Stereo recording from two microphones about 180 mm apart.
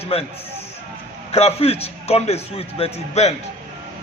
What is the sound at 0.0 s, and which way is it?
Speech, 35° left (ahead or behind).